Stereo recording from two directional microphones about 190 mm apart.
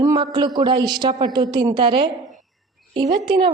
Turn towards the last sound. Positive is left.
turn(degrees=-25)  # may be behind; listen again after turning